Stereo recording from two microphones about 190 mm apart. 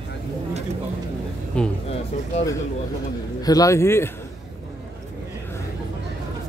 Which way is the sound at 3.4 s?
20° left (ahead or behind).